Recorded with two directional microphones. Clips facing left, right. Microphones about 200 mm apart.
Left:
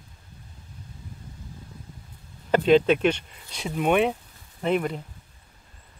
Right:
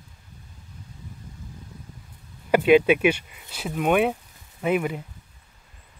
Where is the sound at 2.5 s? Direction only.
10° right (ahead or behind).